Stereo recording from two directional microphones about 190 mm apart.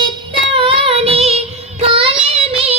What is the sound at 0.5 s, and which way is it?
Child singing, 30° right (ahead or behind).